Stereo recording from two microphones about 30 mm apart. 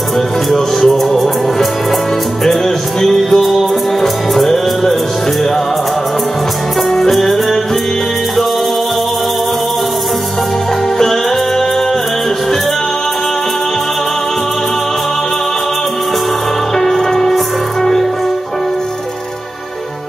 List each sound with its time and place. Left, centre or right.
0.5 s music: centre
3.0 s music: centre
6.9 s music: centre
16.7 s music: centre